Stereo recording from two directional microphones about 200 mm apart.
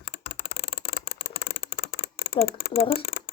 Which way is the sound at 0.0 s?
50° left (ahead or behind).